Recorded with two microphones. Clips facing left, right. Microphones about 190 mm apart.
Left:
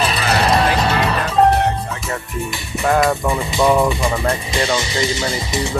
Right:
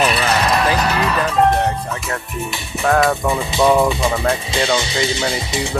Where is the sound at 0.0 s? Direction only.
30° left (ahead or behind).